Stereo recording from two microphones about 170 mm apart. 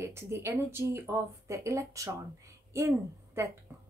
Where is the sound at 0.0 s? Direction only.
15° right (ahead or behind).